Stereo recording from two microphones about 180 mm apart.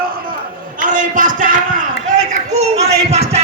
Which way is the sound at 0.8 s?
45° right (ahead or behind).